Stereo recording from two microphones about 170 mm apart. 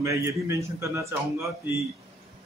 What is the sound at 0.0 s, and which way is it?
Speech, 15° right (ahead or behind).